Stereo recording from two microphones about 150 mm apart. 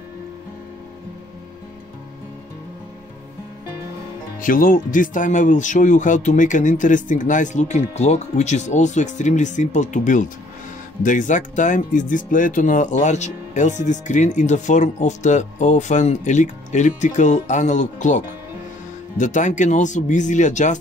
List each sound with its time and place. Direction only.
4.4 s speech: 65° left (ahead or behind)